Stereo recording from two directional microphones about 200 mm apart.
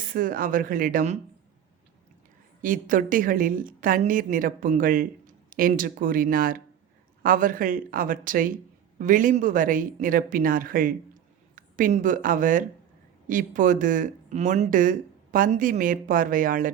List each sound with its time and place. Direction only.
0.1 s a woman's voice: 45° right (ahead or behind)
2.6 s a woman's voice: 40° right (ahead or behind)